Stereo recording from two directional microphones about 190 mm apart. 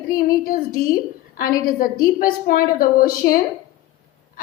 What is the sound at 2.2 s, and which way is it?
A woman's voice, 50° left (ahead or behind).